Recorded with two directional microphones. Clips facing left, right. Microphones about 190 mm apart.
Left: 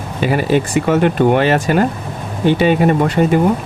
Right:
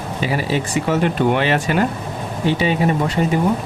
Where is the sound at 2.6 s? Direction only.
55° left (ahead or behind).